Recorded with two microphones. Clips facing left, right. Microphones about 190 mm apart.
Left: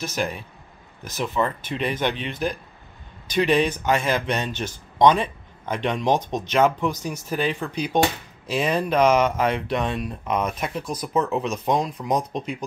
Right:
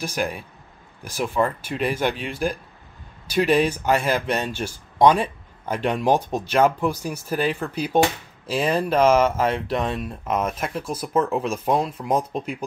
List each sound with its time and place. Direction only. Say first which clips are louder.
0.0 s speech: right 1 dB; 10° right (ahead or behind)